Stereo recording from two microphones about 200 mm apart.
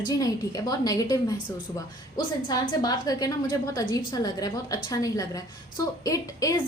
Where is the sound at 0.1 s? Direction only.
20° left (ahead or behind).